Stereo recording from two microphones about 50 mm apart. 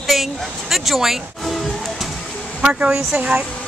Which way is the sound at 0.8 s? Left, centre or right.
Centre.